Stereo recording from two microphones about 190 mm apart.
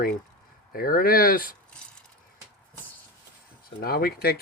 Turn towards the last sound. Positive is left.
turn(degrees=55)  # may be behind; listen again after turning